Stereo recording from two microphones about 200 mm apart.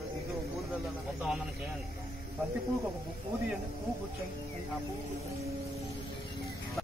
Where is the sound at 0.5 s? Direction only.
Centre (ahead or behind).